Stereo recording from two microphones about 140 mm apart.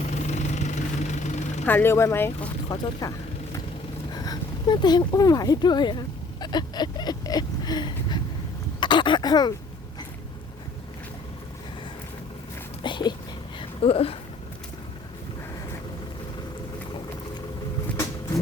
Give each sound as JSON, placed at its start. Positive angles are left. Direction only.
{"t": 0.1, "sound": "vehicle", "side_deg": 55}
{"t": 1.6, "sound": "speech", "side_deg": 15}
{"t": 2.7, "sound": "speech", "side_deg": 30}
{"t": 4.1, "sound": "speech", "side_deg": 25}
{"t": 12.8, "sound": "a sound", "side_deg": 30}
{"t": 13.6, "sound": "a sound", "side_deg": 45}